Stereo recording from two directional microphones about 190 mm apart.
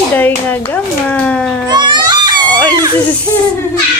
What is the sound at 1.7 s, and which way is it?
Baby cry, 25° right (ahead or behind).